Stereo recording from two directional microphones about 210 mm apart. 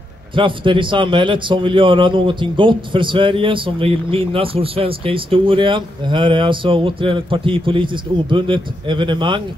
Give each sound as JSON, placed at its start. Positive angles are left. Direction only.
{"t": 0.3, "sound": "a man's voice", "side_deg": -25}